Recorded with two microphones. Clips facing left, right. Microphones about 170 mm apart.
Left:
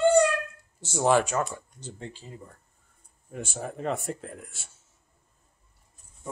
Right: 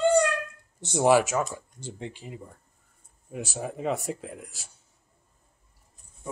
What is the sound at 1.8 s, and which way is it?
Speech, 15° right (ahead or behind).